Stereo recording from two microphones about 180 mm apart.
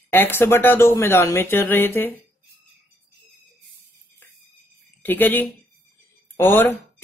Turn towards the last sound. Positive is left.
turn(degrees=10)  # may be behind; listen again after turning